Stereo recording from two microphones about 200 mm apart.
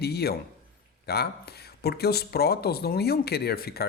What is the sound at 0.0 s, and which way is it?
Speech, 55° left (ahead or behind).